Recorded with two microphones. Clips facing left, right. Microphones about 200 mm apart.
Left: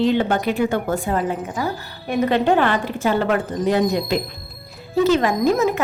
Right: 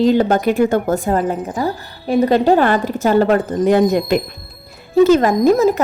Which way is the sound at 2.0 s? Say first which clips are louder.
Right 5 dB; 30° right (ahead or behind).